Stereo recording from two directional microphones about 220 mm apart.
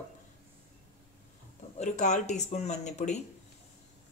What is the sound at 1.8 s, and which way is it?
Speech, 30° left (ahead or behind).